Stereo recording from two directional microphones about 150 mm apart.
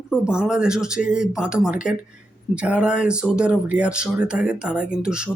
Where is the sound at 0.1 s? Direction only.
5° right (ahead or behind).